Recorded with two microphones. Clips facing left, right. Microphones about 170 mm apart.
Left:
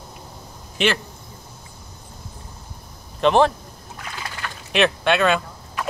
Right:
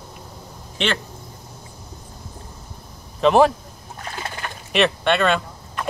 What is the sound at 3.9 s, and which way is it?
Bird, 35° right (ahead or behind).